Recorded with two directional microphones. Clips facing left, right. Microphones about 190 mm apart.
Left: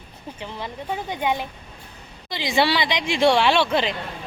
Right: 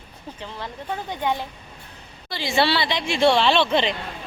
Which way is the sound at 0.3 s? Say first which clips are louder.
Left 2 dB; 15° left (ahead or behind).